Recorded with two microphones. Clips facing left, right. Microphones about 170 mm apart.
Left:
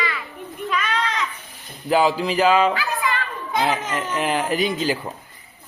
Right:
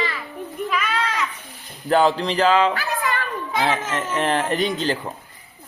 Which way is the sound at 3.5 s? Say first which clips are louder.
Left 1 dB; centre (ahead or behind).